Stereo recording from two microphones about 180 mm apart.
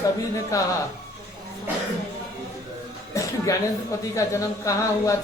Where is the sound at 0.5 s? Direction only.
15° left (ahead or behind).